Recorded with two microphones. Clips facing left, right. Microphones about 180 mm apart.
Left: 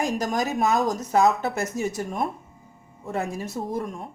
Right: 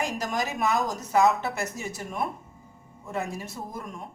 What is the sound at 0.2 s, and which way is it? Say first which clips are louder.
A woman's voice: left 4 dB; 40° left (ahead or behind).